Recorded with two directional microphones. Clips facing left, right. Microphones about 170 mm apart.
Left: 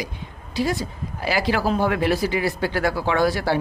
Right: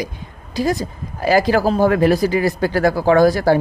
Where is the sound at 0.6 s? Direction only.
45° right (ahead or behind).